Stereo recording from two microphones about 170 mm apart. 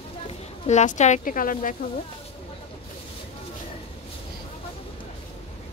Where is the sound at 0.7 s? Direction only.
45° left (ahead or behind).